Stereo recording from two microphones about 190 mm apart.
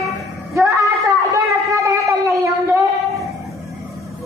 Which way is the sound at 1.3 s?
15° right (ahead or behind).